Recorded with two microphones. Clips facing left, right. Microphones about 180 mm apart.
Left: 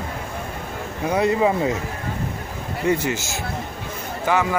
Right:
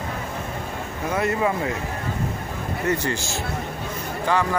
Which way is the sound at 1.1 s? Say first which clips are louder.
Left 4 dB; 15° left (ahead or behind).